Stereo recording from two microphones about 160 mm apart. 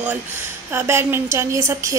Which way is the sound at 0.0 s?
10° right (ahead or behind).